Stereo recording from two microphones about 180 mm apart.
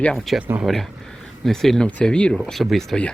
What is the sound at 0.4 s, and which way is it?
Speech, 10° right (ahead or behind).